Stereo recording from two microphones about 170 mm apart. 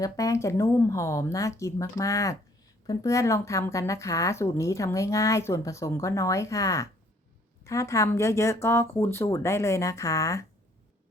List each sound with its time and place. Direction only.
0.0 s speech: 20° left (ahead or behind)